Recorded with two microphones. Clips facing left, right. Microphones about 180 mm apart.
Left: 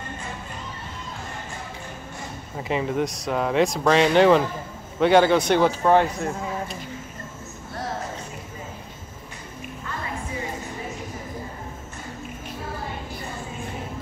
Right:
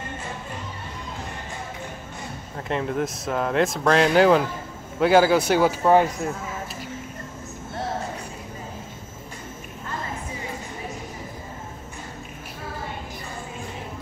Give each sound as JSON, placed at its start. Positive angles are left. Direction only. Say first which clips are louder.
{"t": 2.5, "sound": "a man's voice", "louder": "left 1 dB", "side_deg": 0}